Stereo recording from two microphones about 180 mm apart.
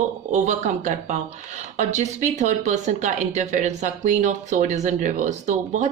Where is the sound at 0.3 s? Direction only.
40° right (ahead or behind).